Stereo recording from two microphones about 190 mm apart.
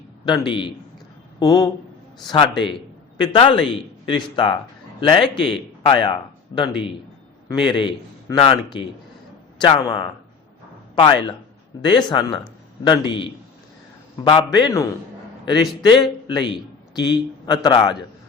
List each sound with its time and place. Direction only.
0.3 s a man's voice: 25° left (ahead or behind)
14.3 s speech: 25° left (ahead or behind)
15.9 s a man's voice: 25° left (ahead or behind)